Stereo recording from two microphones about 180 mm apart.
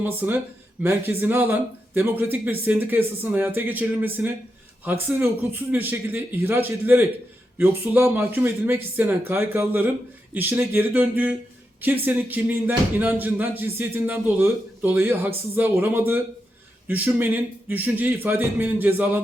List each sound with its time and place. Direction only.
0.0 s speech: 10° right (ahead or behind)